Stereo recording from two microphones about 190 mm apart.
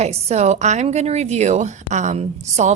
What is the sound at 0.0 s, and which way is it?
A woman's voice, 35° right (ahead or behind).